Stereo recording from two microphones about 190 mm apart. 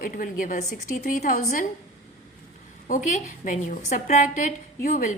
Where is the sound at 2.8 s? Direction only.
40° left (ahead or behind).